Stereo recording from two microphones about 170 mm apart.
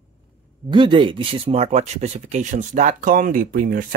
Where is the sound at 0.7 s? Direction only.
30° right (ahead or behind).